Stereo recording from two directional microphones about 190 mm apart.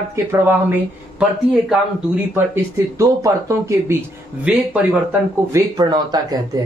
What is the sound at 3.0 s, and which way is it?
Speech, 15° right (ahead or behind).